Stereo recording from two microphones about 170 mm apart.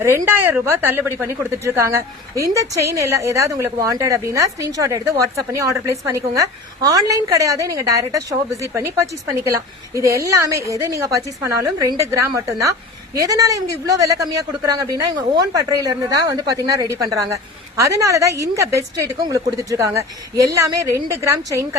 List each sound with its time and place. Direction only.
0.0 s a woman's voice: 15° right (ahead or behind)